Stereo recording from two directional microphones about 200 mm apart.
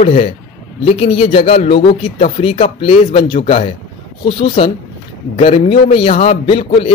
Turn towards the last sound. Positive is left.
turn(degrees=30)  # may be behind; listen again after turning